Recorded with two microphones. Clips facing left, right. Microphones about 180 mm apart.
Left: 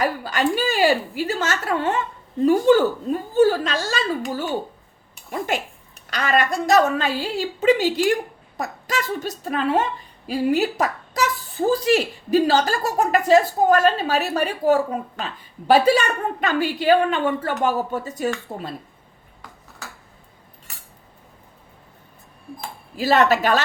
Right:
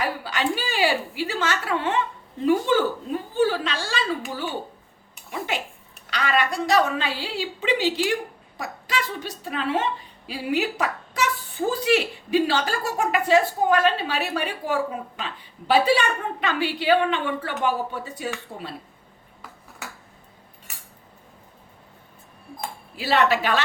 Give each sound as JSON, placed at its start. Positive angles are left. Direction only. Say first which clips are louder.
{"t": 0.0, "sound": "a woman's voice", "louder": "left 4 dB", "side_deg": 45}
{"t": 5.5, "sound": "a woman's voice", "louder": "left 4 dB", "side_deg": 50}
{"t": 23.0, "sound": "a woman's voice", "louder": "left 4 dB", "side_deg": 45}